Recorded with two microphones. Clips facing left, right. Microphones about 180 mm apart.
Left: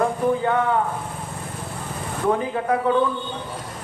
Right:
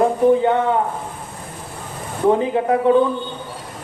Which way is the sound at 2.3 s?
25° right (ahead or behind).